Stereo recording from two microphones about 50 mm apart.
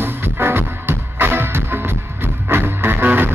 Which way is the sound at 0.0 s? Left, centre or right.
Right.